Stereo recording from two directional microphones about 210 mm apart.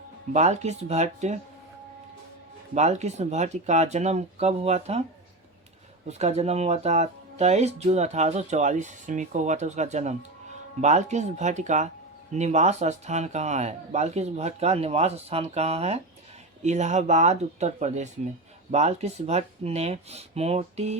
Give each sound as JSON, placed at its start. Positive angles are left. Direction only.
{"t": 0.3, "sound": "speech", "side_deg": -35}
{"t": 2.7, "sound": "speech", "side_deg": -35}
{"t": 6.1, "sound": "speech", "side_deg": -30}